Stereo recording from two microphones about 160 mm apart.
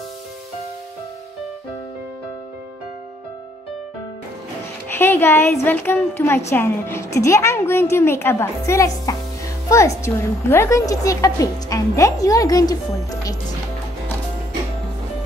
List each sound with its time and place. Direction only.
4.9 s a woman's voice: 15° left (ahead or behind)